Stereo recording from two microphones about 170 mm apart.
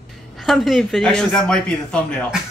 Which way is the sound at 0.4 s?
Centre (ahead or behind).